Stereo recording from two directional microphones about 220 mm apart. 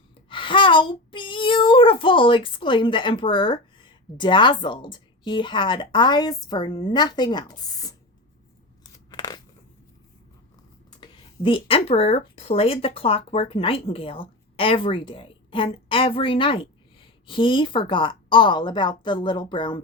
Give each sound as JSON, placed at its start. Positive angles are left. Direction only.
{"t": 0.3, "sound": "child singing", "side_deg": 20}
{"t": 8.8, "sound": "a sound", "side_deg": 20}
{"t": 11.0, "sound": "speech", "side_deg": 20}